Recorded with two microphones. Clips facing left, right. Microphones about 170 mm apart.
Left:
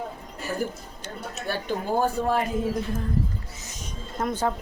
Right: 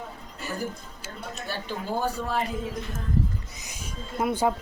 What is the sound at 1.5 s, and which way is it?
Speech, 50° left (ahead or behind).